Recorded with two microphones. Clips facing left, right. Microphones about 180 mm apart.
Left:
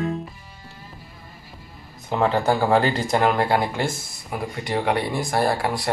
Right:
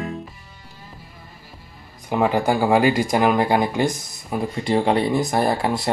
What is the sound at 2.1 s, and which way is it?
Speech, 15° right (ahead or behind).